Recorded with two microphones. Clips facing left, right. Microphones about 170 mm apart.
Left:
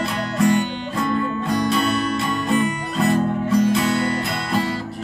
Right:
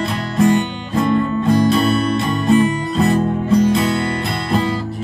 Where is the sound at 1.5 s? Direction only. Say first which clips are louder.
Right 6 dB; 30° right (ahead or behind).